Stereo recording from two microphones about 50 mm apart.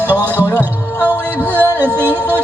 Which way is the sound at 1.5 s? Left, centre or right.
Right.